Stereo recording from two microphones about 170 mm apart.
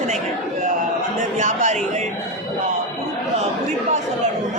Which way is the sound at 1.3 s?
45° right (ahead or behind).